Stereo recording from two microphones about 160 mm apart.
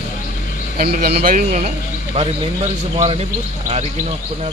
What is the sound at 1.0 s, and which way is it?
Speech, 75° right (ahead or behind).